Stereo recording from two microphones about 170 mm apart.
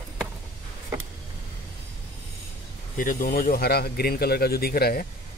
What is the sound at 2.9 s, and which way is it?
Speech, 55° left (ahead or behind).